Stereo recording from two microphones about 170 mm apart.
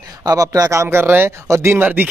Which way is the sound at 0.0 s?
20° right (ahead or behind).